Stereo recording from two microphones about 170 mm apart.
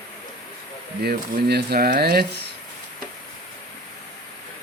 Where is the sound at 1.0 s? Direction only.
70° right (ahead or behind).